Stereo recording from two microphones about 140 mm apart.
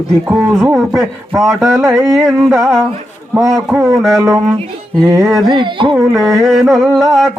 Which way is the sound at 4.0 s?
Centre (ahead or behind).